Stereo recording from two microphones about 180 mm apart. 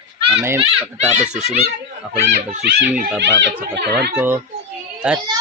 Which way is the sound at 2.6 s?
65° right (ahead or behind).